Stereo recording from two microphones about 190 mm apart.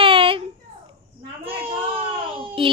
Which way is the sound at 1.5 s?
30° right (ahead or behind).